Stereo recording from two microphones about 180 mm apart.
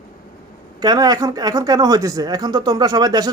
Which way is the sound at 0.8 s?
20° right (ahead or behind).